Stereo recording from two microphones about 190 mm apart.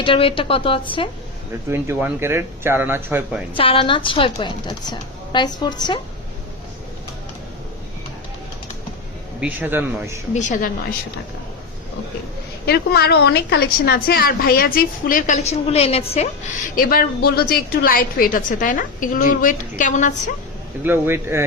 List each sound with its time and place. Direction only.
0.0 s a woman's voice: 30° left (ahead or behind)
1.7 s speech: 10° right (ahead or behind)
3.5 s a woman's voice: 30° left (ahead or behind)
9.4 s speech: 10° right (ahead or behind)
10.3 s a woman's voice: 40° left (ahead or behind)
12.6 s a woman's voice: 55° left (ahead or behind); by 16.3 s 35° left (ahead or behind)
16.7 s a woman's voice: 50° left (ahead or behind)
20.8 s speech: 10° right (ahead or behind)